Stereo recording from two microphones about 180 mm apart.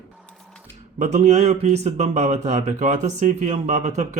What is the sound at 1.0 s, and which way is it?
A man's voice, 40° right (ahead or behind).